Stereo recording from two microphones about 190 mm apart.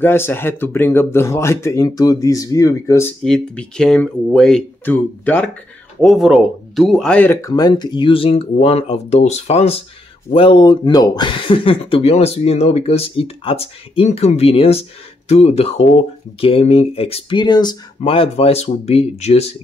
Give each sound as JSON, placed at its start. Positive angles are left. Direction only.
{"t": 0.0, "sound": "speech", "side_deg": 10}
{"t": 3.3, "sound": "speech", "side_deg": 5}